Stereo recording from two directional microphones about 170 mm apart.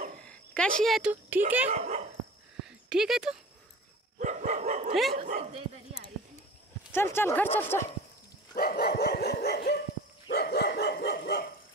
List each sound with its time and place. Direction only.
0.2 s a sound: 5° left (ahead or behind)
1.7 s dog: 40° right (ahead or behind)
2.6 s a sound: 5° right (ahead or behind)
4.2 s dog: 45° right (ahead or behind)
5.1 s speech: 50° right (ahead or behind)
6.9 s speech: 15° left (ahead or behind)
8.5 s dog: 65° left (ahead or behind)